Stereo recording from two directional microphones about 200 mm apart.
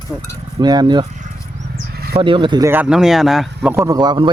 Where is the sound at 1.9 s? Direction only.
50° right (ahead or behind).